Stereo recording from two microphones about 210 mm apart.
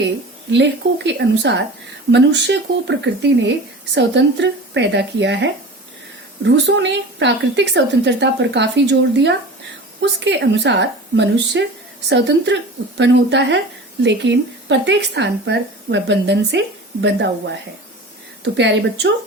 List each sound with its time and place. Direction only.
0.5 s speech: 55° right (ahead or behind)